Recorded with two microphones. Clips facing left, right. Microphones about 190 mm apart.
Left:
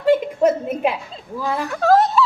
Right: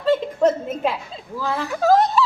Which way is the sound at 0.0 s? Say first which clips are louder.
Left 2 dB; 15° left (ahead or behind).